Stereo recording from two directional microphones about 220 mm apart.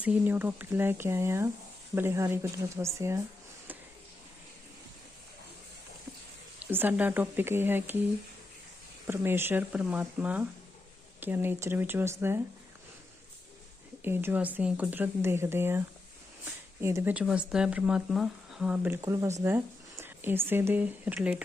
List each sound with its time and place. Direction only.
0.0 s speech: 5° right (ahead or behind)
6.7 s speech: 10° right (ahead or behind)
9.0 s speech: 10° right (ahead or behind)
14.0 s speech: 10° right (ahead or behind)
16.8 s speech: 10° right (ahead or behind)
19.0 s speech: 15° right (ahead or behind)